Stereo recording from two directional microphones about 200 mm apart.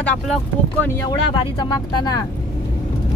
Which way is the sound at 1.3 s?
25° left (ahead or behind).